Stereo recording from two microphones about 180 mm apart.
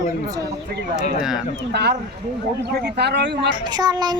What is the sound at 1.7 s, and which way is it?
Speech, 60° right (ahead or behind).